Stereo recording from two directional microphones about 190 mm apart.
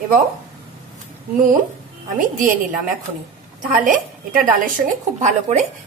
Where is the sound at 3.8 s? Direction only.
45° right (ahead or behind).